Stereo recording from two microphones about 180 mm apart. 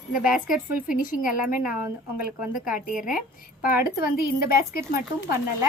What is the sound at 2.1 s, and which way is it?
Speech, 5° right (ahead or behind).